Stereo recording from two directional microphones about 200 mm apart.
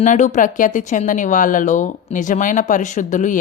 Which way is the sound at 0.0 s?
40° left (ahead or behind).